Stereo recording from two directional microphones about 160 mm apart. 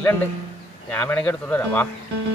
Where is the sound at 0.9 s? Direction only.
10° left (ahead or behind).